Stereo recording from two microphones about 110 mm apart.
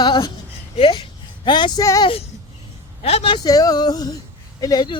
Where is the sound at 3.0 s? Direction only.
70° left (ahead or behind).